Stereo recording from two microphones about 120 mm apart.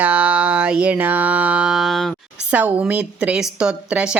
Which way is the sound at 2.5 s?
10° right (ahead or behind).